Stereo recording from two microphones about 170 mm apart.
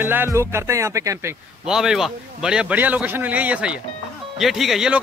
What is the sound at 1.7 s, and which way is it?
A man's voice, 5° right (ahead or behind).